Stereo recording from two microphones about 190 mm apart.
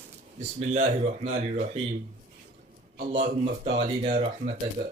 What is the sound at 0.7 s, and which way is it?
Speech, 40° right (ahead or behind).